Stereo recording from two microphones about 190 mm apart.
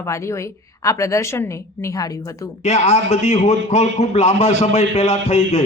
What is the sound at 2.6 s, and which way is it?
A man's voice, 35° left (ahead or behind).